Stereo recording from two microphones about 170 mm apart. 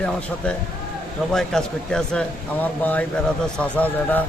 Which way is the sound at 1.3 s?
5° left (ahead or behind).